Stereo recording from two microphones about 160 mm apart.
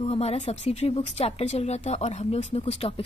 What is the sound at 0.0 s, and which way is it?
A woman's voice, 40° left (ahead or behind).